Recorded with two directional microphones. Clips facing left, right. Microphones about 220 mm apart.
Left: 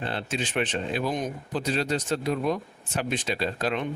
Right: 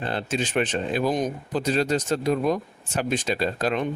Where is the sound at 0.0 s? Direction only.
45° right (ahead or behind).